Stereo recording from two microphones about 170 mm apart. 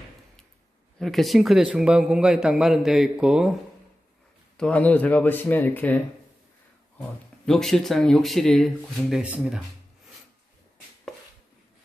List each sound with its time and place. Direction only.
0.9 s speech: centre (ahead or behind)
4.6 s speech: 5° left (ahead or behind)
7.0 s speech: 5° left (ahead or behind)